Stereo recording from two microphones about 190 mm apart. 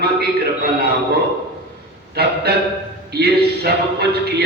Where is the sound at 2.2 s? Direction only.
55° right (ahead or behind).